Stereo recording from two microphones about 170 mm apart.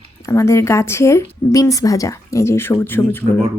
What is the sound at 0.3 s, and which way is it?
Speech, 15° left (ahead or behind).